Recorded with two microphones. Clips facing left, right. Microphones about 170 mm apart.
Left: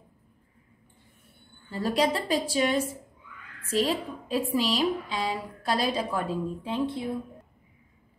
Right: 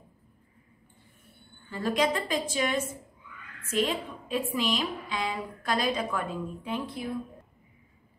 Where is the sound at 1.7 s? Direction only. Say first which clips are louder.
Left 1 dB; 35° left (ahead or behind).